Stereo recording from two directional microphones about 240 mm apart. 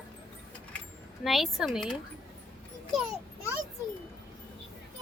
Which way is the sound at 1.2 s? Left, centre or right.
Centre.